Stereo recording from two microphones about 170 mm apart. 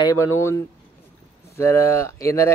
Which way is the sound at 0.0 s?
15° left (ahead or behind).